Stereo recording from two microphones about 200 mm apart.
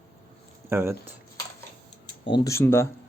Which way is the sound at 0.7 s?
10° right (ahead or behind).